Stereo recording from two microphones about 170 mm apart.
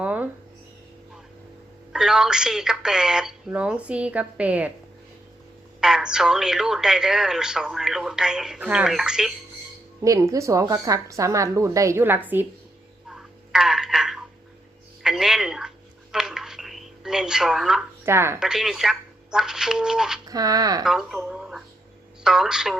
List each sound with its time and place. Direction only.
0.0 s a sound: 10° right (ahead or behind)
1.9 s a woman's voice: 5° right (ahead or behind)
5.8 s a woman's voice: 5° right (ahead or behind)
10.0 s a woman's voice: 20° right (ahead or behind)
13.1 s a sound: 5° right (ahead or behind)
15.0 s speech: 5° right (ahead or behind)
16.1 s telephone: 5° right (ahead or behind)
18.0 s speech: 15° right (ahead or behind)
18.3 s a woman's voice: 5° right (ahead or behind)
20.2 s speech: 20° right (ahead or behind)
20.8 s a woman's voice: centre (ahead or behind)